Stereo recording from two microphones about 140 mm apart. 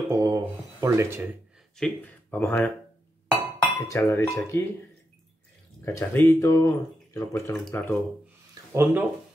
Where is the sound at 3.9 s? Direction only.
20° left (ahead or behind).